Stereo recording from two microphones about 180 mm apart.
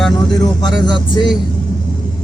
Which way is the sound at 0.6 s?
25° left (ahead or behind).